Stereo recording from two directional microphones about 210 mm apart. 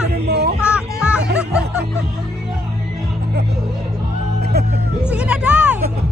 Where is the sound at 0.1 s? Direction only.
50° right (ahead or behind).